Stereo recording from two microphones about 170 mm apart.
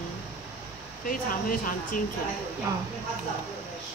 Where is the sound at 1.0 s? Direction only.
55° left (ahead or behind).